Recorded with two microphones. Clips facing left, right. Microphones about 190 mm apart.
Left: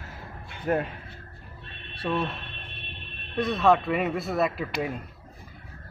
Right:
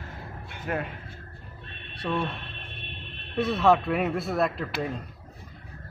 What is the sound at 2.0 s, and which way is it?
Speech, centre (ahead or behind).